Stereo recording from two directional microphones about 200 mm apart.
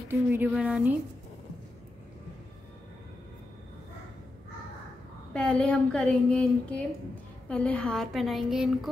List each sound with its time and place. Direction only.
0.3 s a woman's voice: 10° right (ahead or behind)
5.3 s a woman's voice: 5° left (ahead or behind)